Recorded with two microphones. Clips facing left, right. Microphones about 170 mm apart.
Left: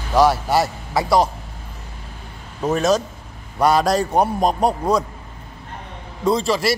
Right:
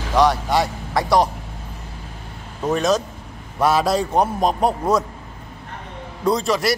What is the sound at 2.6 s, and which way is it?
Speech, centre (ahead or behind).